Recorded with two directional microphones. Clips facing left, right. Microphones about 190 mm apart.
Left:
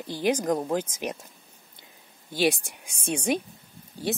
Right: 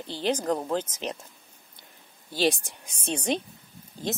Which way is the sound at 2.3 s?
10° left (ahead or behind).